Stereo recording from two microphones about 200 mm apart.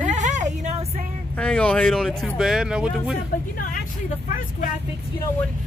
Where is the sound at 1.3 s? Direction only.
5° left (ahead or behind).